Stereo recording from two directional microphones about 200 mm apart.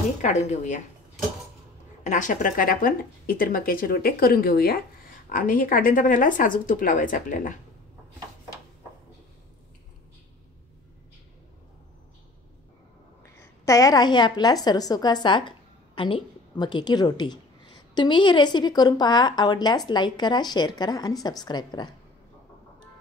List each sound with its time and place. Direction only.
0.2 s speech: 35° left (ahead or behind)
2.0 s speech: 40° left (ahead or behind)
13.2 s a woman's voice: 15° left (ahead or behind)